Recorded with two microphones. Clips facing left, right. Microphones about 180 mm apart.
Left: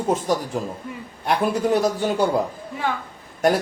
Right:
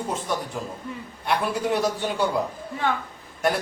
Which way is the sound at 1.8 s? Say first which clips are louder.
Left 4 dB; 40° left (ahead or behind).